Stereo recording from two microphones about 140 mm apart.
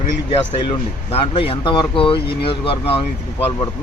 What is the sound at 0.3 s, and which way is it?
Speech, 45° left (ahead or behind).